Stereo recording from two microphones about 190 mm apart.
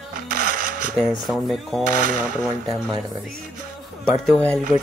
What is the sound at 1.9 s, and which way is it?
Speech, 45° right (ahead or behind).